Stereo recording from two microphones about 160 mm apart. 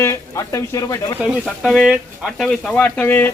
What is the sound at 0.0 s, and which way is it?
Speech, 20° left (ahead or behind).